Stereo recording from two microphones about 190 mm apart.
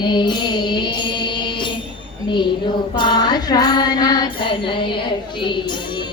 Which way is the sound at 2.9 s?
25° left (ahead or behind).